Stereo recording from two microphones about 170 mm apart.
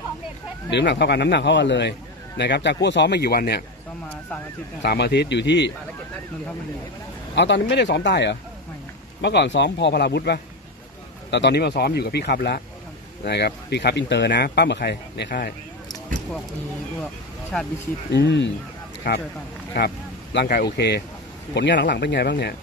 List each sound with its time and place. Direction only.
0.7 s a man's voice: 85° left; by 3.6 s 70° left (ahead or behind)
4.8 s a man's voice: 75° left (ahead or behind)
7.3 s speech: 90° left; by 10.4 s 75° left (ahead or behind)
11.2 s speech: 90° left; by 15.5 s 65° left (ahead or behind)
17.5 s speech: 5° left (ahead or behind)
18.1 s a man's voice: 85° left
19.7 s a man's voice: 85° left
20.3 s speech: 60° left (ahead or behind)
20.7 s a man's voice: 80° left